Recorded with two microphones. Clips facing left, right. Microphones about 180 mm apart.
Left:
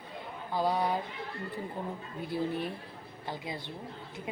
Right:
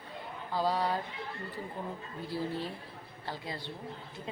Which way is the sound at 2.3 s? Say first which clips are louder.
Left 3 dB; 20° left (ahead or behind).